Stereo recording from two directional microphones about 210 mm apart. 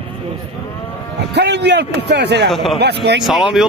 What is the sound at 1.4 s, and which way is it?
A man's voice, 55° right (ahead or behind).